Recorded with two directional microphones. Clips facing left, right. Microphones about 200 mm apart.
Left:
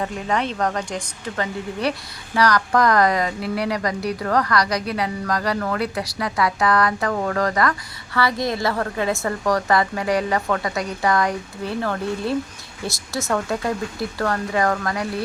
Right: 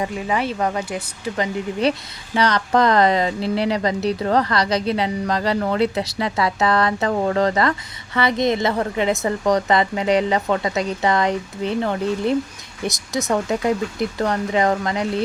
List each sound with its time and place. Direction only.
0.0 s speech: 5° right (ahead or behind)
1.8 s speech: 20° right (ahead or behind)